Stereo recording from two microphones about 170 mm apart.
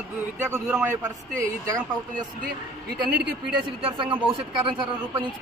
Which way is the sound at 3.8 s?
30° right (ahead or behind).